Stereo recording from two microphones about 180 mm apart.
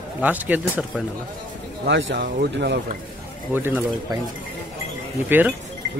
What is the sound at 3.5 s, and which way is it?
Speech, 10° right (ahead or behind).